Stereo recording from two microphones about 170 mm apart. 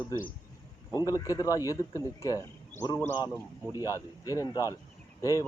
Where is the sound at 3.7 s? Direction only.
20° left (ahead or behind).